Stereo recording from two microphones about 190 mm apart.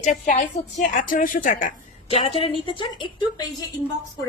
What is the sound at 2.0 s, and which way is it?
Speech, 30° left (ahead or behind).